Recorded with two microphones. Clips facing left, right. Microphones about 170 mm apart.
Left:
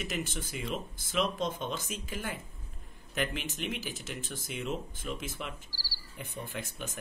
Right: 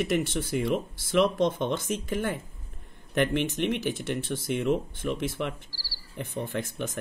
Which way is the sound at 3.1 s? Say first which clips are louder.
Right 9 dB; 60° right (ahead or behind).